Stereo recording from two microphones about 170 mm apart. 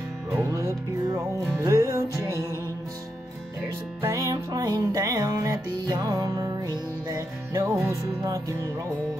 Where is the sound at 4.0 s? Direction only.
20° right (ahead or behind).